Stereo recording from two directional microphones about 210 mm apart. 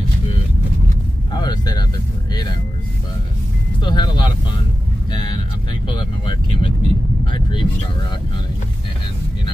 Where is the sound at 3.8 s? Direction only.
20° left (ahead or behind).